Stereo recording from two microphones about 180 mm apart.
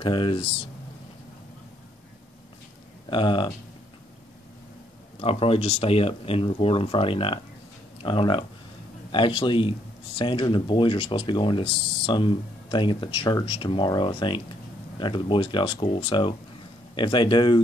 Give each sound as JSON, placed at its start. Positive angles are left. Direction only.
{"t": 0.0, "sound": "speech", "side_deg": 30}
{"t": 3.1, "sound": "speech", "side_deg": 25}
{"t": 5.2, "sound": "speech", "side_deg": 35}